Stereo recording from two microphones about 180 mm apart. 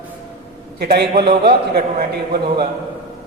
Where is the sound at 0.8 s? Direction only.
60° right (ahead or behind).